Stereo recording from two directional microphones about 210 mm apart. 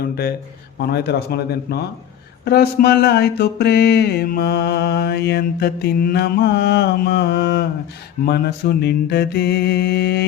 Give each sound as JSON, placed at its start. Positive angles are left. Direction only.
{"t": 0.8, "sound": "mantra", "side_deg": 50}